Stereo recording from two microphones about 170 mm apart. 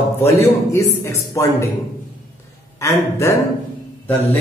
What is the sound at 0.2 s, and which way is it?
A man's voice, 15° left (ahead or behind).